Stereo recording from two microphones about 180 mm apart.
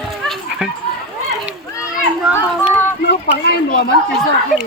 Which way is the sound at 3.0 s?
65° left (ahead or behind).